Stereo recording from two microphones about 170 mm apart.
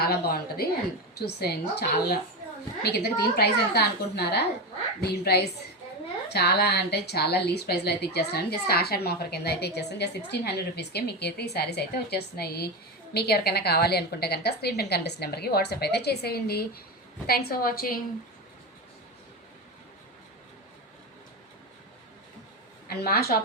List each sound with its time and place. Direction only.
0.0 s a woman's voice: 65° left (ahead or behind)
22.9 s a woman's voice: 65° left (ahead or behind)